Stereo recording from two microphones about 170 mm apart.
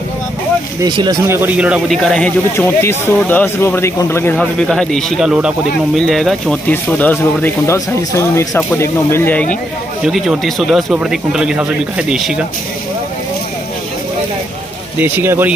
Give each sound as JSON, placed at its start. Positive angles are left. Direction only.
{"t": 0.8, "sound": "speech", "side_deg": -25}
{"t": 1.2, "sound": "speech", "side_deg": -15}
{"t": 2.0, "sound": "speech", "side_deg": 5}
{"t": 10.0, "sound": "speech", "side_deg": -5}
{"t": 15.0, "sound": "speech", "side_deg": -10}